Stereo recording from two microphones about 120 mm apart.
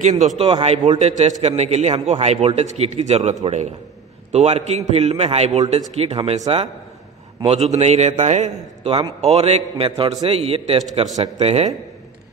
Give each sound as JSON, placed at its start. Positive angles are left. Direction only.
{"t": 0.0, "sound": "a man's voice", "side_deg": -75}
{"t": 0.4, "sound": "a man's voice", "side_deg": -55}
{"t": 5.9, "sound": "a man's voice", "side_deg": -55}
{"t": 9.2, "sound": "a man's voice", "side_deg": -65}
{"t": 9.8, "sound": "a man's voice", "side_deg": -45}